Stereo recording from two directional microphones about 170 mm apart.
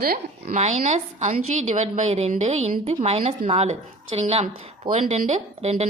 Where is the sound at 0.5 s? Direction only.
40° right (ahead or behind).